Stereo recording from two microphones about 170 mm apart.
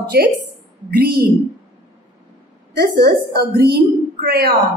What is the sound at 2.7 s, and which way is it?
A woman's voice, 70° right (ahead or behind).